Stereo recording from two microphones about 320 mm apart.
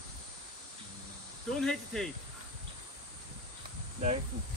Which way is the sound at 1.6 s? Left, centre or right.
Centre.